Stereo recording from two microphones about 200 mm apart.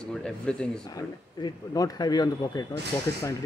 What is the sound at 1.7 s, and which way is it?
Speech, 20° left (ahead or behind).